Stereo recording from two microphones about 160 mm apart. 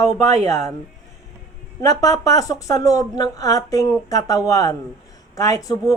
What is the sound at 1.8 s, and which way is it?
A woman's voice, 20° left (ahead or behind).